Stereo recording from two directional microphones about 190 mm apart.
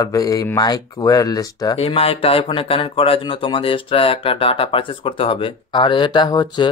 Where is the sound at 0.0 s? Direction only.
20° left (ahead or behind).